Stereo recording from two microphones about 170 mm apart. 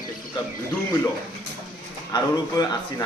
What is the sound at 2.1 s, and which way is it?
Speech, 25° left (ahead or behind).